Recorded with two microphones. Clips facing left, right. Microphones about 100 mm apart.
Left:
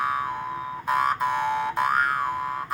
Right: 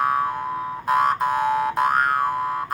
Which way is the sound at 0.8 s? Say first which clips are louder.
Right 4 dB; 45° right (ahead or behind).